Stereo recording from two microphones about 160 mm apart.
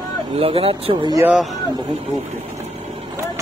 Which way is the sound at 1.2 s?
Centre (ahead or behind).